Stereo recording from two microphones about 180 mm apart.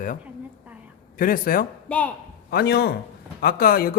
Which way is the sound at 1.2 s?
50° left (ahead or behind).